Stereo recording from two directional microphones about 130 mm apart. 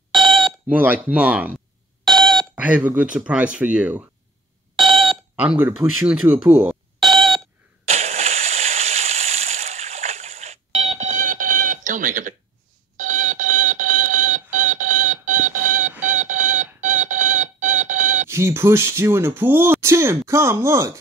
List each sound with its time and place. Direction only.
0.1 s a sound: centre (ahead or behind)
0.7 s speech: 15° right (ahead or behind)
2.0 s alarm clock: 5° left (ahead or behind)
2.5 s speech: 10° right (ahead or behind)
4.7 s alarm clock: centre (ahead or behind)
5.3 s speech: 10° right (ahead or behind)
7.0 s a sound: centre (ahead or behind)
7.8 s a sound: 60° right (ahead or behind); by 12.4 s 90° right
12.9 s alarm clock: 75° right (ahead or behind)
18.2 s speech: 20° right (ahead or behind)